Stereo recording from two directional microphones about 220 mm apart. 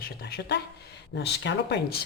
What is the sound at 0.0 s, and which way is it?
Speech, 45° left (ahead or behind).